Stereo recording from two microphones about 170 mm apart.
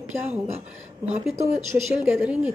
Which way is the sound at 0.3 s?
40° right (ahead or behind).